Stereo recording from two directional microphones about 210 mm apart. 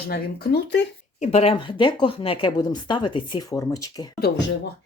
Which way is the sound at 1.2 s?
30° left (ahead or behind).